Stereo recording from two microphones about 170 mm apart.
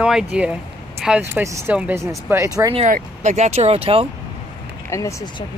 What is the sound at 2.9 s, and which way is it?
Speech, 50° right (ahead or behind).